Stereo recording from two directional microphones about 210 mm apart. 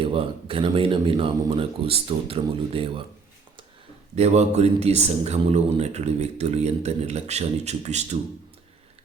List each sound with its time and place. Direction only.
0.0 s speech: 25° right (ahead or behind)
4.1 s speech: 30° right (ahead or behind)